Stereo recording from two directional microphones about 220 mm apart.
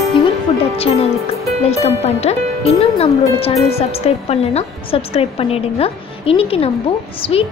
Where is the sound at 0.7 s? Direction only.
25° left (ahead or behind).